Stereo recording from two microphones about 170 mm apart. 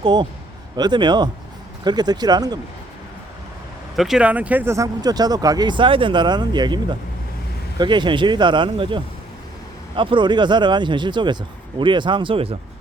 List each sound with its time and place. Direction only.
0.0 s speech: 25° right (ahead or behind)
3.9 s speech: centre (ahead or behind); by 6.7 s 25° right (ahead or behind)
7.8 s speech: 25° right (ahead or behind)